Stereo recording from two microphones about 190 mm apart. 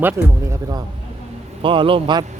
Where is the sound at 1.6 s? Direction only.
25° right (ahead or behind).